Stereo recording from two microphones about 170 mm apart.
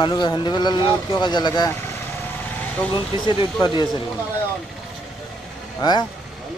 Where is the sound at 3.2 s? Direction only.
25° left (ahead or behind).